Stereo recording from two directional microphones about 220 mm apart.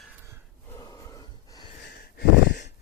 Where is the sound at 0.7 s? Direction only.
15° left (ahead or behind).